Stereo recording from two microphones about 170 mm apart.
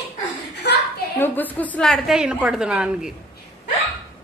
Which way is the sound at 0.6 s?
75° left (ahead or behind).